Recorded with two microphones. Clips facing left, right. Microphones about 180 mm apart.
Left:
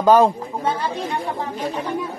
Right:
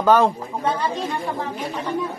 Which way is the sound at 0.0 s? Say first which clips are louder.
Left 2 dB; 15° left (ahead or behind).